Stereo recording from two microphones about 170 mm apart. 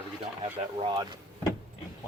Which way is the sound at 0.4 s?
30° right (ahead or behind).